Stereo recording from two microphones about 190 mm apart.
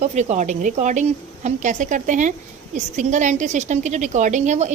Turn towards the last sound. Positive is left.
turn(degrees=-40)  # may be behind; listen again after turning